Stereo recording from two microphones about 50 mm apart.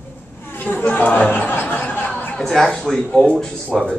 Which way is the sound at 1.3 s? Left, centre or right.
Left.